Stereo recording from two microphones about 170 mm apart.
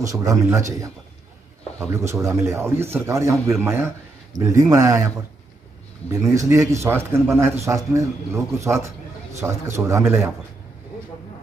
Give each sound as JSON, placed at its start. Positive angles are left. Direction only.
{"t": 0.0, "sound": "a man's voice", "side_deg": -20}